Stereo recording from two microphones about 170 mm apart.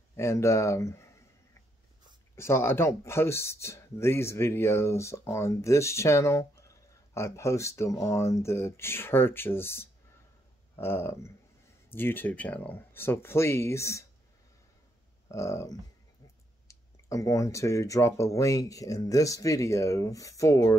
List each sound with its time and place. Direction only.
0.1 s speech: 15° left (ahead or behind)
2.3 s speech: 15° left (ahead or behind)
15.2 s speech: 15° left (ahead or behind)